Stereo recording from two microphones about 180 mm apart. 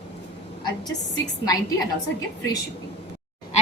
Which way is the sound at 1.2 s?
20° left (ahead or behind).